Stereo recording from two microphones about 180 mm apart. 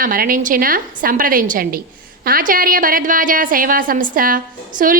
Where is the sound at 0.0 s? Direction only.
50° right (ahead or behind).